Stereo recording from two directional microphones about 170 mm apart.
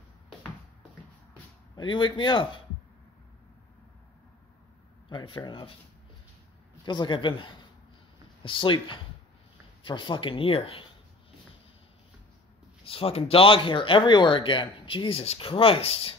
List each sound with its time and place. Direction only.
1.8 s speech: 30° left (ahead or behind)
5.1 s speech: 25° left (ahead or behind)
6.8 s speech: 25° left (ahead or behind)
12.8 s speech: 35° left (ahead or behind)